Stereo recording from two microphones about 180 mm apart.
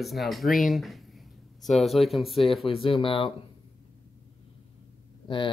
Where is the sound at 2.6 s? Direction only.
30° left (ahead or behind).